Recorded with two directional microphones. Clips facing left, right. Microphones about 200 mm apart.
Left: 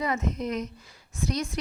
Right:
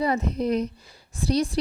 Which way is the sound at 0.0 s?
35° right (ahead or behind).